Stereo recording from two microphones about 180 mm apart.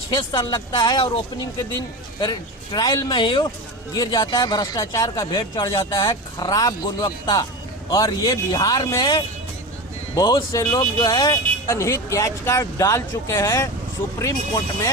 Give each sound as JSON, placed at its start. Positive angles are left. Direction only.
{"t": 0.1, "sound": "speech", "side_deg": 25}
{"t": 2.7, "sound": "speech", "side_deg": 20}